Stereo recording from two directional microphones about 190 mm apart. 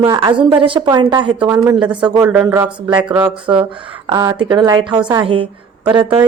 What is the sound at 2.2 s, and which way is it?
Speech, 10° right (ahead or behind).